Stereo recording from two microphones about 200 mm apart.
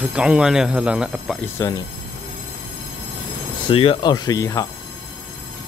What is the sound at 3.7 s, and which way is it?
Speech, 25° left (ahead or behind).